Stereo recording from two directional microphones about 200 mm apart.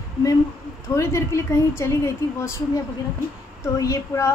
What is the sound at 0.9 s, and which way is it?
A woman's voice, 15° left (ahead or behind).